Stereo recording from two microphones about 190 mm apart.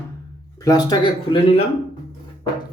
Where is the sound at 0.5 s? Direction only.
20° left (ahead or behind).